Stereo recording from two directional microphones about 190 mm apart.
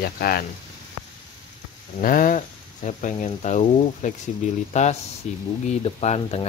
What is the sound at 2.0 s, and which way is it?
Speech, 45° left (ahead or behind).